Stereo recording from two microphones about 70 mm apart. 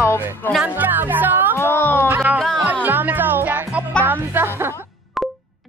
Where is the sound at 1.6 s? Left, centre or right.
Left.